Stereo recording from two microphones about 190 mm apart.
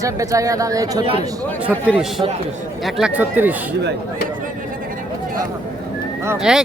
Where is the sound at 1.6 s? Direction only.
5° right (ahead or behind).